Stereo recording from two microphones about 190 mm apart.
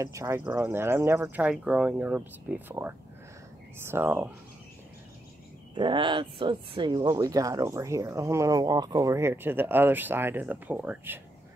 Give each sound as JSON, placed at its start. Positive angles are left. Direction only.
{"t": 0.0, "sound": "speech", "side_deg": -15}
{"t": 5.8, "sound": "speech", "side_deg": -25}